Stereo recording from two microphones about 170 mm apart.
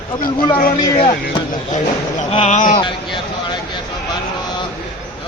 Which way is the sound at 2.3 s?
45° left (ahead or behind).